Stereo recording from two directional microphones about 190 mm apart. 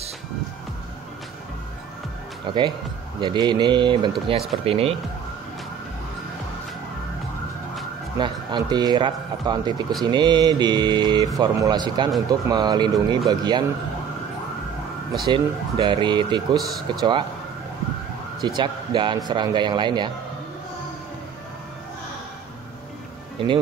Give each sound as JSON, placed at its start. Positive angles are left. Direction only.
{"t": 2.5, "sound": "speech", "side_deg": -25}
{"t": 8.2, "sound": "speech", "side_deg": -25}
{"t": 15.2, "sound": "speech", "side_deg": -25}
{"t": 18.4, "sound": "speech", "side_deg": -25}